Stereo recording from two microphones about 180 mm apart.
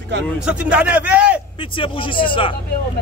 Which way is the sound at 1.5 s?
30° left (ahead or behind).